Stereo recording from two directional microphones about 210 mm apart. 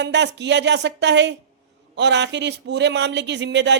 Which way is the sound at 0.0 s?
55° right (ahead or behind).